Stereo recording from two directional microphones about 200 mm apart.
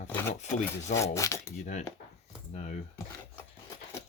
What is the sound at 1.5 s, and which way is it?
Speech, 35° left (ahead or behind).